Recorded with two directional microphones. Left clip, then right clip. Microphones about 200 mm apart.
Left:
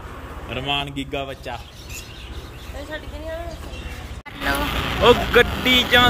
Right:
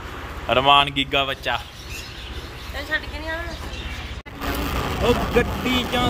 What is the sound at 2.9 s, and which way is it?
Speech, 20° left (ahead or behind).